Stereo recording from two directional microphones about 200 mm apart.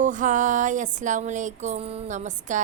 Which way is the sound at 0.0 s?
40° right (ahead or behind).